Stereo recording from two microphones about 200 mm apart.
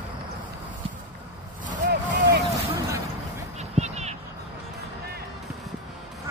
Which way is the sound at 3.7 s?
35° right (ahead or behind).